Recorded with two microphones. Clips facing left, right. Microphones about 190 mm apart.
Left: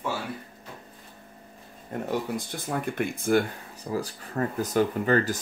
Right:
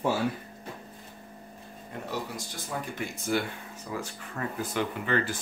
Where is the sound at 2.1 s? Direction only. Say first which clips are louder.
Left 6 dB; 55° left (ahead or behind).